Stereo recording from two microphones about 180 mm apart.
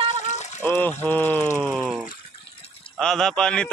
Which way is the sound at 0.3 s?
40° left (ahead or behind).